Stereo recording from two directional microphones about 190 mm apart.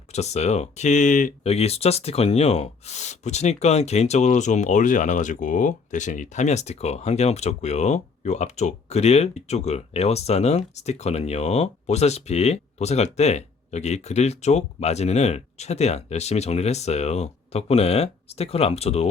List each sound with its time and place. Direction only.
0.1 s speech: 35° left (ahead or behind)